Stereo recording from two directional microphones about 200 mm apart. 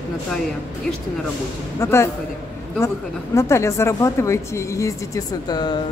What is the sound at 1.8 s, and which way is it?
Speech, 15° left (ahead or behind).